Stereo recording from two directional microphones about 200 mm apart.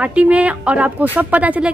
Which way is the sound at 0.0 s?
5° right (ahead or behind).